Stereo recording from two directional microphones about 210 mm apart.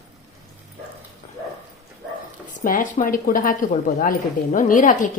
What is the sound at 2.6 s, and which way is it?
Speech, 40° left (ahead or behind).